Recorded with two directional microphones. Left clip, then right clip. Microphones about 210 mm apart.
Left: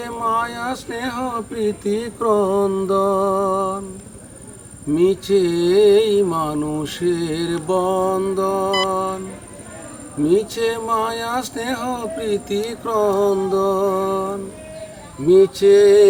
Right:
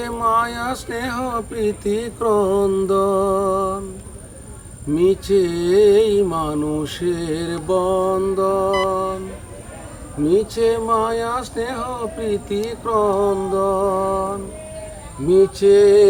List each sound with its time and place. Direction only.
0.0 s a sound: 20° right (ahead or behind); by 3.8 s 5° right (ahead or behind)
4.9 s mantra: 15° left (ahead or behind); by 9.1 s 35° left (ahead or behind)
10.2 s speech: 30° left (ahead or behind)
15.3 s mantra: 25° left (ahead or behind)